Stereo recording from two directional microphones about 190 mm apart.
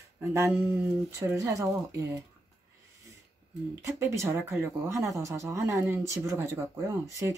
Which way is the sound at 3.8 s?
15° right (ahead or behind).